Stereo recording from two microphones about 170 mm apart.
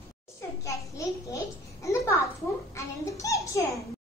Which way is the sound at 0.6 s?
20° left (ahead or behind).